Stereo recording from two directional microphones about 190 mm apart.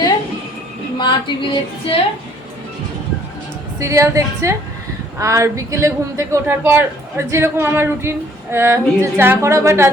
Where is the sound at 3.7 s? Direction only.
15° right (ahead or behind).